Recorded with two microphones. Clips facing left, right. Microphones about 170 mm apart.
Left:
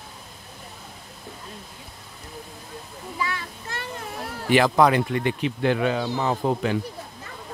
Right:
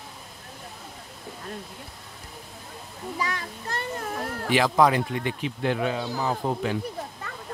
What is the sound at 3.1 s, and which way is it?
A child's voice, 40° right (ahead or behind).